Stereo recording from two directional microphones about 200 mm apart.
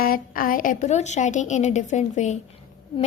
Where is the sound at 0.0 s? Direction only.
45° left (ahead or behind).